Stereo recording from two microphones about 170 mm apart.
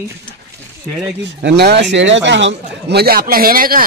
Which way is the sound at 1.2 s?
85° right.